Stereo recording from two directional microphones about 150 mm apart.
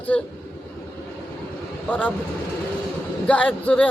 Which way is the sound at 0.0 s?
10° left (ahead or behind).